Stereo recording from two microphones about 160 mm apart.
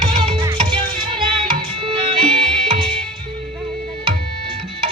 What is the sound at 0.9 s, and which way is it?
Music, 30° right (ahead or behind).